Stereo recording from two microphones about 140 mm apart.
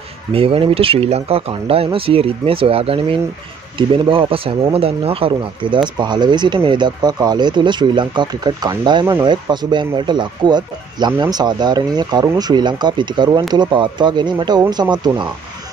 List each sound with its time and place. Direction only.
0.3 s speech: 40° right (ahead or behind)